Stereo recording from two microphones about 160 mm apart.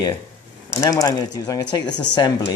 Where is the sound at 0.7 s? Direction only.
20° left (ahead or behind).